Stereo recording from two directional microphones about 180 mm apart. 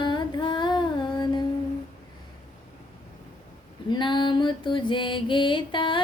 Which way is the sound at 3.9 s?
25° left (ahead or behind).